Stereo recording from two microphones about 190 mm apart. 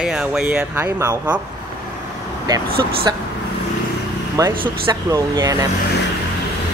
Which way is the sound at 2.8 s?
20° right (ahead or behind).